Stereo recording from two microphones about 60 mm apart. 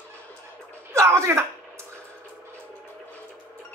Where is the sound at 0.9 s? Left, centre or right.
Right.